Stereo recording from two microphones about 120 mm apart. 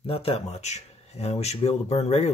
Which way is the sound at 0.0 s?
50° left (ahead or behind).